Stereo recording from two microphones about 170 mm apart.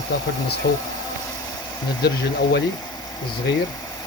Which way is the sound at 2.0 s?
85° left.